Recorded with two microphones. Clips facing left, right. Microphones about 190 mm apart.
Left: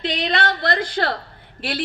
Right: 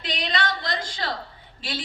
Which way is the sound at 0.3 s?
60° left (ahead or behind).